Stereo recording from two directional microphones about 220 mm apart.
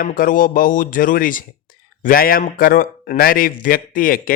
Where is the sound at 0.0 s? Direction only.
40° left (ahead or behind).